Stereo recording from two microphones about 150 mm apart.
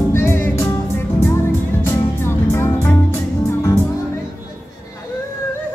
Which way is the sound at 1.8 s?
15° left (ahead or behind).